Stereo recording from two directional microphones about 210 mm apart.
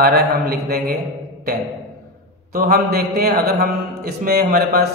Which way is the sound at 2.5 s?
45° right (ahead or behind).